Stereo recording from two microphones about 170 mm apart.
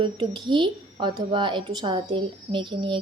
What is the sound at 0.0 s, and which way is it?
A woman's voice, 30° right (ahead or behind).